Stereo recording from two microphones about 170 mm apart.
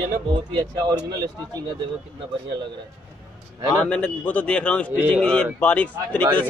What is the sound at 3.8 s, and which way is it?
A man's voice, 5° left (ahead or behind).